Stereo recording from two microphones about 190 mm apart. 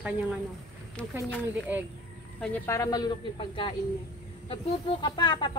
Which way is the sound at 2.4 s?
10° left (ahead or behind).